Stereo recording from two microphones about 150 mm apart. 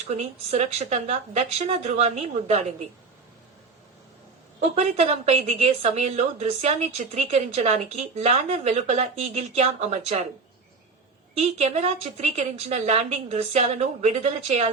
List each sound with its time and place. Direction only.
0.1 s a woman's voice: 50° right (ahead or behind)
4.7 s a woman's voice: 45° right (ahead or behind)
11.3 s a woman's voice: 45° right (ahead or behind)